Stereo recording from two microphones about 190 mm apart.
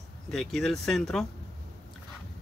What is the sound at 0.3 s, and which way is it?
Speech, centre (ahead or behind).